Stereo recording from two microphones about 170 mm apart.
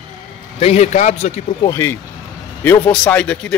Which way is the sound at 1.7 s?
10° left (ahead or behind).